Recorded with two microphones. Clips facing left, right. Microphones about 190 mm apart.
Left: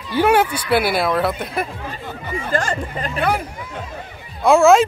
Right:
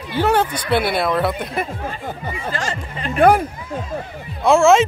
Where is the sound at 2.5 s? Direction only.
50° left (ahead or behind).